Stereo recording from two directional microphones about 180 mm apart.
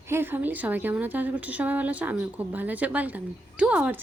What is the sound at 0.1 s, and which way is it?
Speech, 10° right (ahead or behind).